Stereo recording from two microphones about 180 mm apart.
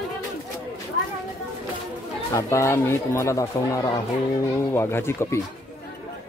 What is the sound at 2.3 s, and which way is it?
Speech, 15° left (ahead or behind).